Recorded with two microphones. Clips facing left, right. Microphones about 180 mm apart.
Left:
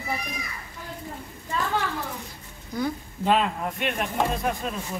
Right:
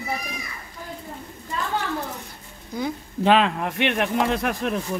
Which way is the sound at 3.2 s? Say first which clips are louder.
Right 4 dB; 90° right.